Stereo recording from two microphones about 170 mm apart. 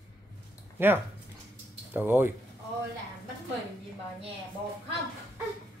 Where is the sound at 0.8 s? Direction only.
15° right (ahead or behind).